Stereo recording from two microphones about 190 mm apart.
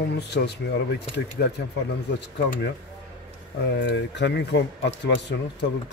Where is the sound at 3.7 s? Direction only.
65° left (ahead or behind).